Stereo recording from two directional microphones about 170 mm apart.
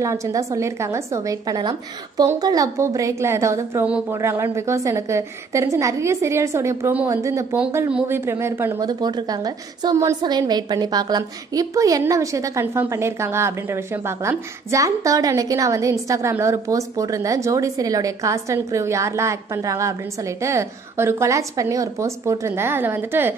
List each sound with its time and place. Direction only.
0.0 s a woman's voice: 20° right (ahead or behind)